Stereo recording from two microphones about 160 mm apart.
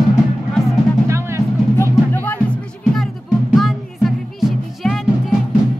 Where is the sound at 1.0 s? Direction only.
15° right (ahead or behind).